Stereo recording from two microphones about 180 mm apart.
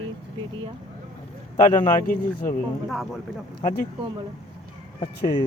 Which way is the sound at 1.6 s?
45° left (ahead or behind).